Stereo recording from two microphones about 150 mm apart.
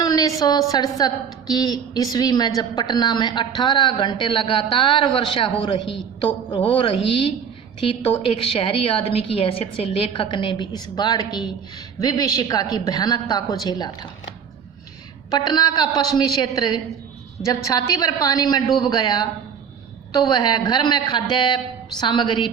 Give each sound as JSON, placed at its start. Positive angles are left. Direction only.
{"t": 0.0, "sound": "a woman's voice", "side_deg": 25}
{"t": 7.8, "sound": "a woman's voice", "side_deg": 40}
{"t": 10.1, "sound": "a woman's voice", "side_deg": 30}
{"t": 15.3, "sound": "a woman's voice", "side_deg": 25}